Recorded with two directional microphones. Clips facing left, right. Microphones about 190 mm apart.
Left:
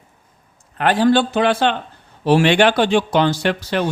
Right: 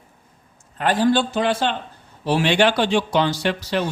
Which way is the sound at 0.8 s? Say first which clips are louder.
Left 3 dB; 70° left (ahead or behind).